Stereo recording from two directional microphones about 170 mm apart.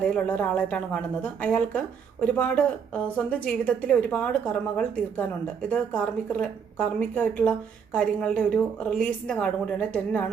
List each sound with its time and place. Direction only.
0.0 s a woman's voice: 5° left (ahead or behind)